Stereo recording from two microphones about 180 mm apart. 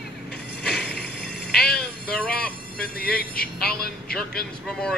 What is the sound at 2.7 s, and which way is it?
Speech, 60° left (ahead or behind).